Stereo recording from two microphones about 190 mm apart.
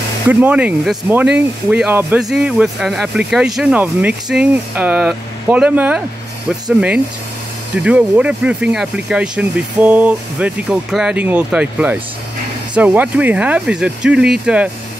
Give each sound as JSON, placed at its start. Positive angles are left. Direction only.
{"t": 0.3, "sound": "speech", "side_deg": -5}
{"t": 7.7, "sound": "speech", "side_deg": -5}